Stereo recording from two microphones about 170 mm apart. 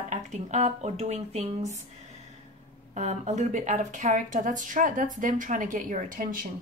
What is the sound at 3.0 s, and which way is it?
A woman's voice, 40° right (ahead or behind).